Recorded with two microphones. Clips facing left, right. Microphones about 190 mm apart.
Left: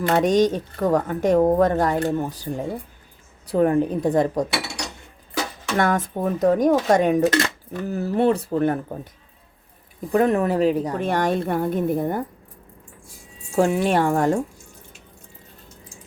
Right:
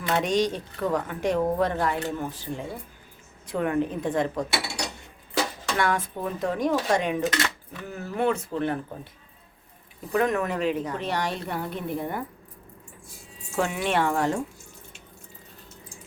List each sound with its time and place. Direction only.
0.1 s speech: 45° left (ahead or behind)
5.7 s speech: 45° left (ahead or behind)
10.1 s speech: 35° left (ahead or behind)
13.6 s speech: 40° left (ahead or behind)